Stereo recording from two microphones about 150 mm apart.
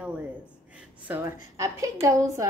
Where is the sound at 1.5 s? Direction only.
20° right (ahead or behind).